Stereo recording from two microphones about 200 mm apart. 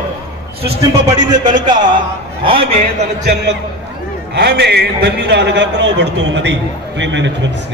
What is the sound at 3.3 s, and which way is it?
A man's voice, 60° right (ahead or behind).